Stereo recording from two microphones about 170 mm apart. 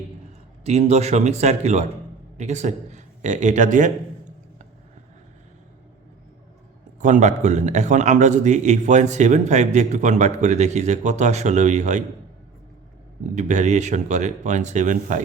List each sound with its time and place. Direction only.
0.6 s a man's voice: 40° right (ahead or behind)
7.0 s a man's voice: 45° right (ahead or behind)
13.3 s a man's voice: 45° right (ahead or behind)